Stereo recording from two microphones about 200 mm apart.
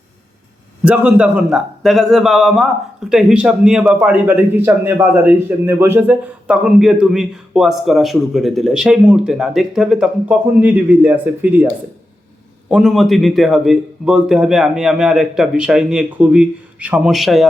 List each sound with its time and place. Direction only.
0.9 s a man's voice: 5° right (ahead or behind)